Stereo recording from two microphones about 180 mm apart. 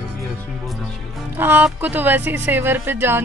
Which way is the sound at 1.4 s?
10° right (ahead or behind).